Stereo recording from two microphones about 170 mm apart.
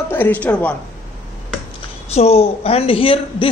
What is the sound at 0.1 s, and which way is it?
Speech, 10° left (ahead or behind).